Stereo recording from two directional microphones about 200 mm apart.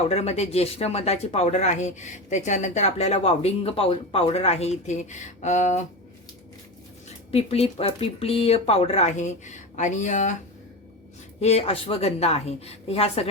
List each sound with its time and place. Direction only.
0.1 s speech: 30° left (ahead or behind)
7.3 s speech: 30° left (ahead or behind)
11.3 s speech: 30° left (ahead or behind)